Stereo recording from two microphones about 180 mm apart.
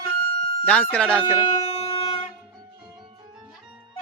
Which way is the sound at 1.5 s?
30° left (ahead or behind).